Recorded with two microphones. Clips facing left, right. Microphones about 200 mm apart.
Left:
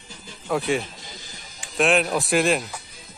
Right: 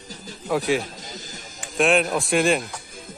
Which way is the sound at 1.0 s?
45° right (ahead or behind).